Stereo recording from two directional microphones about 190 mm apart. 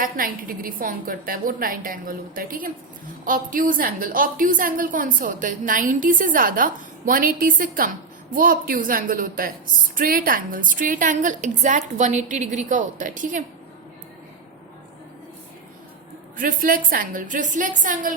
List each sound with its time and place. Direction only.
0.0 s a woman's voice: 50° right (ahead or behind)
16.4 s a woman's voice: 45° right (ahead or behind)